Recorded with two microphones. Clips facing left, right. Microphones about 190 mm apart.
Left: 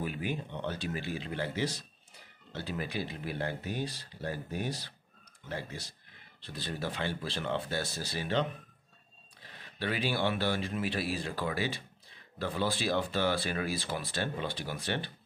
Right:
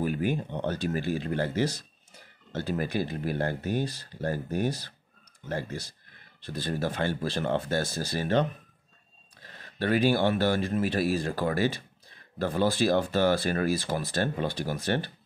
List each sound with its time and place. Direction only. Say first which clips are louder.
0.0 s speech: right 7 dB; 45° right (ahead or behind)
9.8 s speech: right 8 dB; 45° right (ahead or behind)